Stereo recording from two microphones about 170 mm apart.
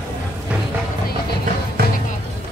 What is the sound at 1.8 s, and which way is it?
Music, 65° right (ahead or behind).